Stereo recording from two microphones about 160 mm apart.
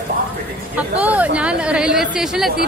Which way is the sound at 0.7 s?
10° right (ahead or behind).